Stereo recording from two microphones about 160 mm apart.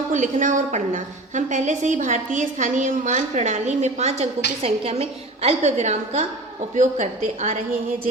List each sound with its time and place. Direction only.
0.1 s a woman's voice: 50° right (ahead or behind)